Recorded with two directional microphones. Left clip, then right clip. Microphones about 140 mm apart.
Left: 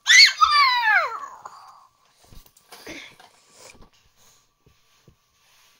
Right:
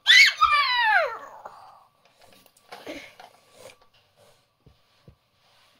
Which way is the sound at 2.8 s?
5° left (ahead or behind).